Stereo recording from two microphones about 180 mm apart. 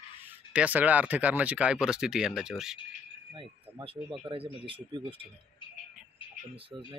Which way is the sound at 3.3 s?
30° right (ahead or behind).